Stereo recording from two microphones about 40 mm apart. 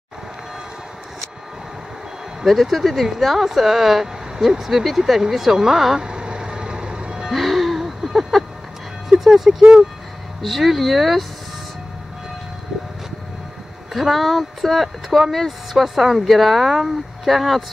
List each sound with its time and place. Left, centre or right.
2.4 s speech: centre
5.9 s vehicle: right
7.2 s music: centre
9.2 s speech: centre
10.4 s speech: centre
13.9 s speech: centre